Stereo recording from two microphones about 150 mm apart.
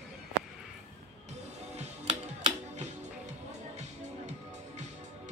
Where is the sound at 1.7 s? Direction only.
45° right (ahead or behind).